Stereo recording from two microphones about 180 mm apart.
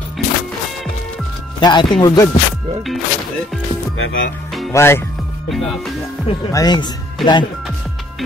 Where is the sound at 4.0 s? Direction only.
90° left.